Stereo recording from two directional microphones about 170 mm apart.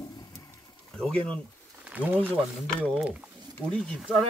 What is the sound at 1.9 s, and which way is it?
Speech, 10° right (ahead or behind).